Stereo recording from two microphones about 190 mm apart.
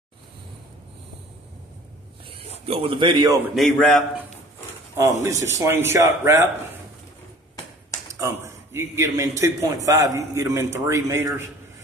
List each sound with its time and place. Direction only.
2.6 s speech: 30° right (ahead or behind)
3.5 s speech: centre (ahead or behind)
5.2 s a man's voice: 15° right (ahead or behind)
8.1 s a man's voice: 15° right (ahead or behind)